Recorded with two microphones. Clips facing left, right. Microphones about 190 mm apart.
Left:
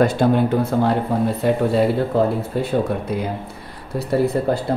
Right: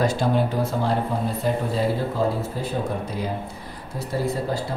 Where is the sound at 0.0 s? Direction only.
55° left (ahead or behind).